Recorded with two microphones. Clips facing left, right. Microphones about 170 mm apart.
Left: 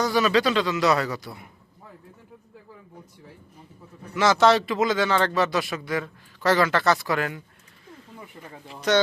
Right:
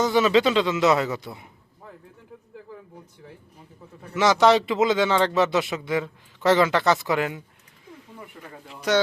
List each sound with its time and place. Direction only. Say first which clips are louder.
0.0 s a man's voice: right 2 dB; 20° right (ahead or behind)
4.1 s a man's voice: right 1 dB; 15° right (ahead or behind)
8.9 s speech: even; 10° right (ahead or behind)